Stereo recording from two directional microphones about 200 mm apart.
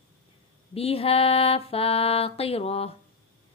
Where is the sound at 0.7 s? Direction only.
30° left (ahead or behind).